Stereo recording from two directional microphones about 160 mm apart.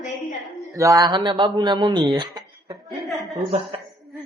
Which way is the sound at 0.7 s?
20° right (ahead or behind).